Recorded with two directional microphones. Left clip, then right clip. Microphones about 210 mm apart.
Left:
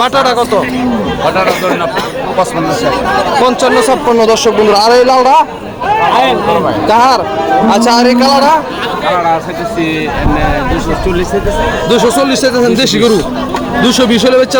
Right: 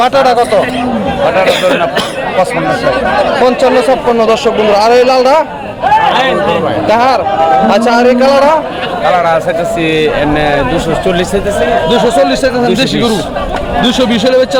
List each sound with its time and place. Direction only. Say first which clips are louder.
0.0 s a man's voice: right 2 dB; centre (ahead or behind)
3.4 s a man's voice: right 1 dB; 10° left (ahead or behind)
6.8 s a man's voice: left 1 dB; 5° left (ahead or behind)
9.1 s a man's voice: right 2 dB; 55° right (ahead or behind)
11.9 s speech: left 2 dB; 10° left (ahead or behind)